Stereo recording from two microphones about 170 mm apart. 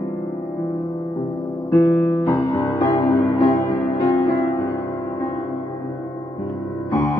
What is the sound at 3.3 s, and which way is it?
Music, 30° left (ahead or behind).